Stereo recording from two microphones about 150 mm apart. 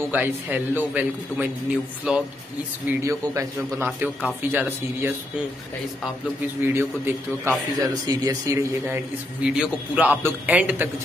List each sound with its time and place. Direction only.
0.1 s a man's voice: 10° right (ahead or behind)
2.9 s a man's voice: 20° right (ahead or behind)
6.4 s a man's voice: 15° right (ahead or behind)